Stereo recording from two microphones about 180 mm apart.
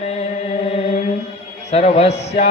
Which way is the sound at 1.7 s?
35° left (ahead or behind).